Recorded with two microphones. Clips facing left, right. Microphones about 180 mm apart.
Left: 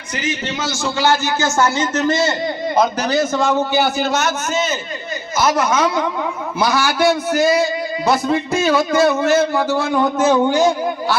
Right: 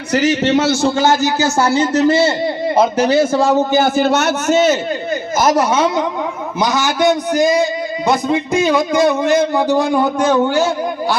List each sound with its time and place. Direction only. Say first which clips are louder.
0.1 s a man's voice: right 10 dB; 75° right (ahead or behind)
5.4 s a man's voice: right 3 dB; 45° right (ahead or behind)
5.7 s a man's voice: right 2 dB; 25° right (ahead or behind)
10.2 s speech: left 2 dB; 10° left (ahead or behind)